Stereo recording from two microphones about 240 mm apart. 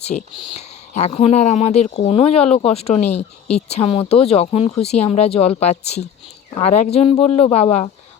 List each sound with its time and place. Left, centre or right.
0.0 s speech: left